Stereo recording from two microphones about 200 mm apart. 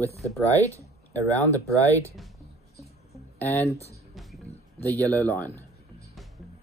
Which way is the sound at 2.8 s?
10° left (ahead or behind).